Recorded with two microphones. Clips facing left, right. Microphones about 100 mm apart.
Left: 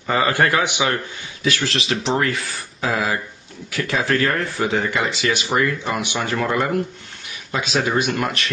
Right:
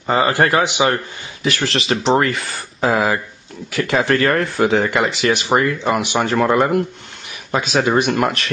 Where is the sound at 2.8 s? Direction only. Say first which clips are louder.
Right 5 dB; 55° right (ahead or behind).